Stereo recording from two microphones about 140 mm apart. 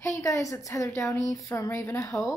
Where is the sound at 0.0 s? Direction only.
25° left (ahead or behind).